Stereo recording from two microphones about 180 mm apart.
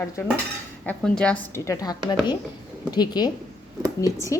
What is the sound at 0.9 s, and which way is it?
A woman's voice, 5° left (ahead or behind).